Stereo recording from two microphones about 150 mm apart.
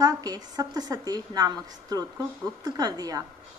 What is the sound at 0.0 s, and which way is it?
Speech, 25° right (ahead or behind).